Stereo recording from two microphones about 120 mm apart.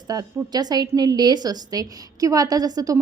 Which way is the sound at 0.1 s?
30° right (ahead or behind).